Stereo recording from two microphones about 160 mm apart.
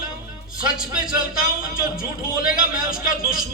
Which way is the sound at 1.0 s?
60° left (ahead or behind).